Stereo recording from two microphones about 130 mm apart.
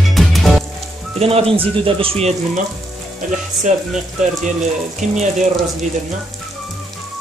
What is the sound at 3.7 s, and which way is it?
Speech, 70° right (ahead or behind).